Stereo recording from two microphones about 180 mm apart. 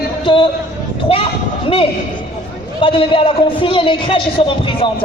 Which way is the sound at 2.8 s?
30° left (ahead or behind).